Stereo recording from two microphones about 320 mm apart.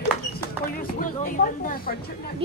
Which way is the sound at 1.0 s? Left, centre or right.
Left.